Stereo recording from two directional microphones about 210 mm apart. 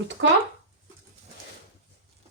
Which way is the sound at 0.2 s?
65° right (ahead or behind).